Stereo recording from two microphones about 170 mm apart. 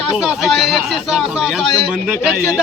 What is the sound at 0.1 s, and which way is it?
Speech, centre (ahead or behind).